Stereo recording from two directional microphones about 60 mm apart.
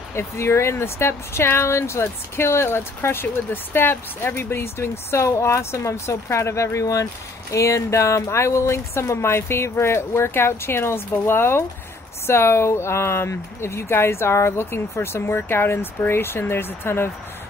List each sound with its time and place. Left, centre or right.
0.1 s speech: left